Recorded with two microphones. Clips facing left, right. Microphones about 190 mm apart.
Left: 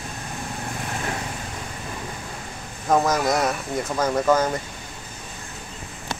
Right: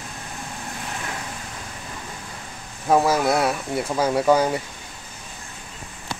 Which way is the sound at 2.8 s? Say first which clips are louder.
Right 2 dB; 10° right (ahead or behind).